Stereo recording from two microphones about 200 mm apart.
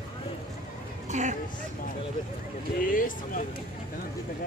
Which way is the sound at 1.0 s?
35° right (ahead or behind).